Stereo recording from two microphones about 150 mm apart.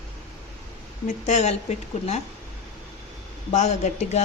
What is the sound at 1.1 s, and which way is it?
Speech, 50° left (ahead or behind).